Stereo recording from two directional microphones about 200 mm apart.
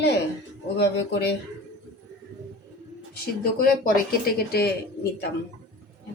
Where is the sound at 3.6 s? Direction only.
45° left (ahead or behind).